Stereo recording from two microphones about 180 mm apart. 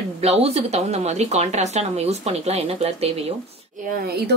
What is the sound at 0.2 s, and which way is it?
Speech, 35° right (ahead or behind).